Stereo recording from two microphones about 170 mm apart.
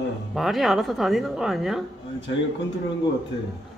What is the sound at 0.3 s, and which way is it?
A woman's voice, centre (ahead or behind).